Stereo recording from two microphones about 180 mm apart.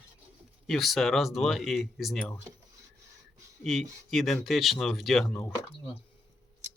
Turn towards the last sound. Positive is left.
turn(degrees=0)  # may be behind; listen again after turning